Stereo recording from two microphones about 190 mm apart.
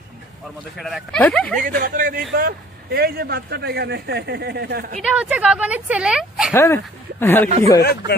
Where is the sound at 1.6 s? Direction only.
50° right (ahead or behind).